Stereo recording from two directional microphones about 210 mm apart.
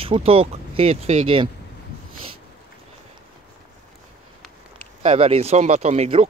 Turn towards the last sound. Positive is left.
turn(degrees=-30)  # may be behind; listen again after turning